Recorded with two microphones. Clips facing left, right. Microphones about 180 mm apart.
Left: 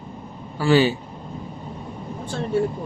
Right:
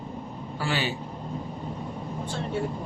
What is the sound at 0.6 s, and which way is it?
Speech, 35° left (ahead or behind).